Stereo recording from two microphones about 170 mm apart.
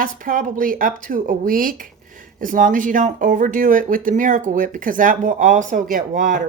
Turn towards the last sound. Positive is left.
turn(degrees=-50)  # may be behind; listen again after turning